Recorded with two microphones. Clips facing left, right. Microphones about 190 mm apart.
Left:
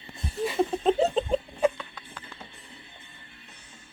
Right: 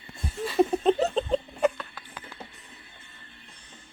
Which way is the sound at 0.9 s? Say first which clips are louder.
Even; 5° left (ahead or behind).